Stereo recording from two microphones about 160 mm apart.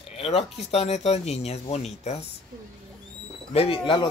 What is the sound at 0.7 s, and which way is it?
Speech, 40° left (ahead or behind).